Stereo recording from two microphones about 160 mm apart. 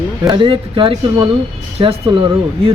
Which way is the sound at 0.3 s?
30° right (ahead or behind).